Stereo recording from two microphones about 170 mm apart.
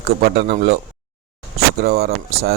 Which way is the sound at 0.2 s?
65° right (ahead or behind).